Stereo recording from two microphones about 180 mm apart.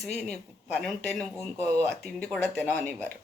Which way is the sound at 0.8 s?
5° left (ahead or behind).